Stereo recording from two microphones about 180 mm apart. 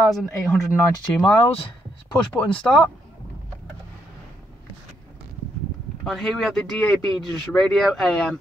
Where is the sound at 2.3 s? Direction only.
5° left (ahead or behind).